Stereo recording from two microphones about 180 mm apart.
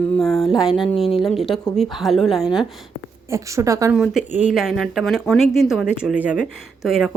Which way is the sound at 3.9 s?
5° right (ahead or behind).